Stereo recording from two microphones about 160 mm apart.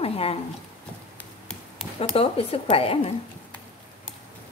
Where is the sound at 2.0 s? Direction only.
40° left (ahead or behind).